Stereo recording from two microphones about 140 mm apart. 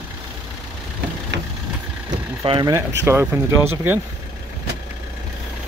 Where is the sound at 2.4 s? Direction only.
35° right (ahead or behind).